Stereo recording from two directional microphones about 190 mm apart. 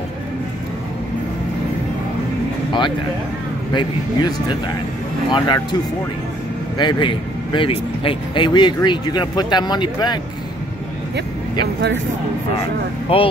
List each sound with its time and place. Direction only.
3.7 s speech: 20° left (ahead or behind)
6.8 s speech: 25° left (ahead or behind)
11.6 s speech: 70° right (ahead or behind)
13.1 s speech: 30° left (ahead or behind)